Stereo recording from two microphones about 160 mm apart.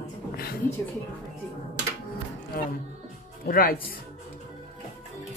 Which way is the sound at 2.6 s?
60° left (ahead or behind).